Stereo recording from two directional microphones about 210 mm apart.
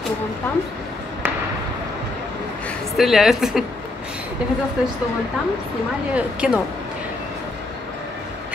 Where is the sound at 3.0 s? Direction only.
Centre (ahead or behind).